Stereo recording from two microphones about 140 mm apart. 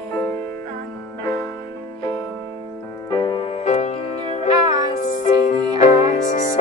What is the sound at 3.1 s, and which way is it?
Music, 30° left (ahead or behind).